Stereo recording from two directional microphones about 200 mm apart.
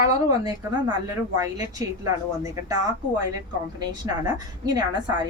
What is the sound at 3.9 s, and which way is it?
A woman's voice, 20° right (ahead or behind).